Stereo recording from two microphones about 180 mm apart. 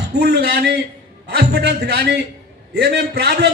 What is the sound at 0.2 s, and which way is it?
A man's voice, 65° right (ahead or behind).